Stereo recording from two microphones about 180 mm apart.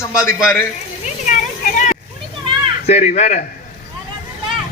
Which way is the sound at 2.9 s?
40° left (ahead or behind).